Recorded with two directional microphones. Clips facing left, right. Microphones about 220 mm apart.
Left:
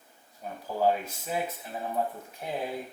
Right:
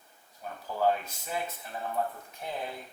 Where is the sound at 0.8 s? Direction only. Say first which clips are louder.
Left 2 dB; 10° left (ahead or behind).